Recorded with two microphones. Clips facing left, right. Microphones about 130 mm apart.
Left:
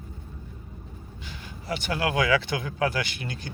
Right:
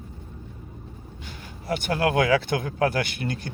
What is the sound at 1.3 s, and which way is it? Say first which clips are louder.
Speech: right 4 dB; 50° right (ahead or behind).